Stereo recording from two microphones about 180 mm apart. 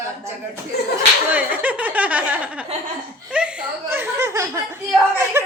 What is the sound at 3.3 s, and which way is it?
Speech, 5° right (ahead or behind).